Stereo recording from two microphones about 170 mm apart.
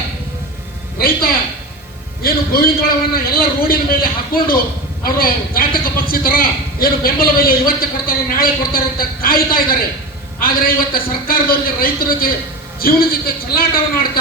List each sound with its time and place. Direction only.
0.9 s a man's voice: 60° left (ahead or behind)